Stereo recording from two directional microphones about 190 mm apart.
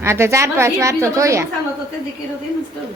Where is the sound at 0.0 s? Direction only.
15° right (ahead or behind).